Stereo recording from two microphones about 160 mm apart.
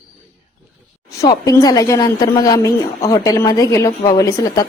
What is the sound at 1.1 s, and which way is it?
A woman's voice, 20° left (ahead or behind).